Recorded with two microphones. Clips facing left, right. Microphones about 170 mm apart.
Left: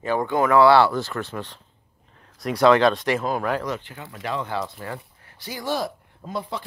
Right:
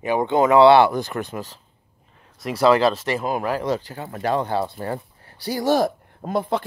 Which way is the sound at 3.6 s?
35° right (ahead or behind).